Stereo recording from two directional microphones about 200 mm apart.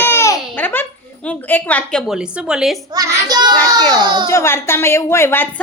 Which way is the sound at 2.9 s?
20° right (ahead or behind).